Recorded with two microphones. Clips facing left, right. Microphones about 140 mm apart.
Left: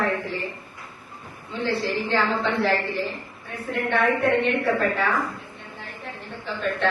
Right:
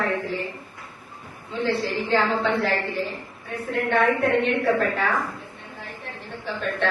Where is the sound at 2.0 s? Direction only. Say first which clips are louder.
Right 3 dB; 40° right (ahead or behind).